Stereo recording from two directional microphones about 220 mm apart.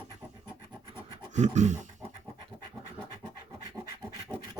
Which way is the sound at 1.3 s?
30° right (ahead or behind).